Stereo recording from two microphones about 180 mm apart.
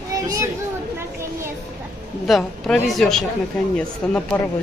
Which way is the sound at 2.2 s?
Centre (ahead or behind).